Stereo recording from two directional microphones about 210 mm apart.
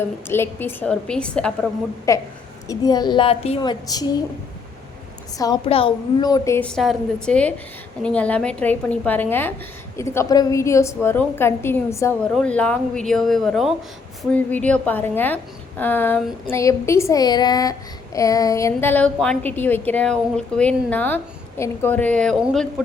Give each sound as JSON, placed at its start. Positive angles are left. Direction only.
{"t": 0.3, "sound": "a woman's voice", "side_deg": 10}
{"t": 2.1, "sound": "a woman's voice", "side_deg": 15}
{"t": 5.6, "sound": "a woman's voice", "side_deg": 25}